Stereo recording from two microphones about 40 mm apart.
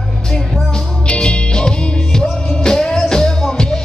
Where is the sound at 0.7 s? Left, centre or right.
Left.